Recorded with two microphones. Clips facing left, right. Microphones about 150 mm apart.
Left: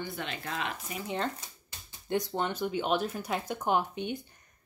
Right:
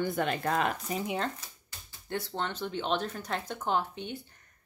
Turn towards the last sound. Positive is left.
turn(degrees=15)  # may be behind; listen again after turning